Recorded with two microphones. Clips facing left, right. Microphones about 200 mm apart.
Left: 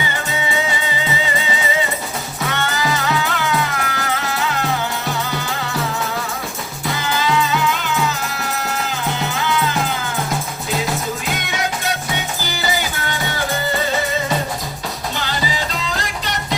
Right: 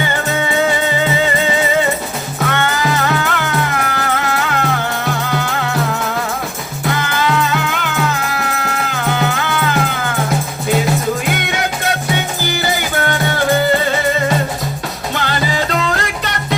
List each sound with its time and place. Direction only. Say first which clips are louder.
0.0 s music: right 6 dB; 55° right (ahead or behind)
6.9 s music: right 2 dB; 60° right (ahead or behind)
11.3 s music: right 4 dB; 60° right (ahead or behind)
15.1 s music: right 7 dB; 60° right (ahead or behind)